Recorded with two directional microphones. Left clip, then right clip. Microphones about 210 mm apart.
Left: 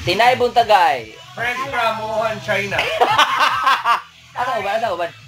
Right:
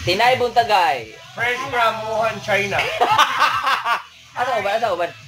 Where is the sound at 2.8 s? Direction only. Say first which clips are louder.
Left 3 dB; 30° left (ahead or behind).